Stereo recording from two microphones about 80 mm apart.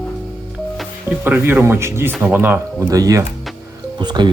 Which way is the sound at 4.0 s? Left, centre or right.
Right.